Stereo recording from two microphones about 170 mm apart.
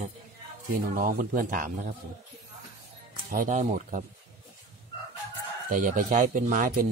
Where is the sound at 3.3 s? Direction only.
50° right (ahead or behind).